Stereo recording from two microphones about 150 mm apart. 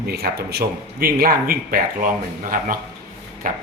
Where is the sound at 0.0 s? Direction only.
90° right; by 2.7 s 70° right (ahead or behind).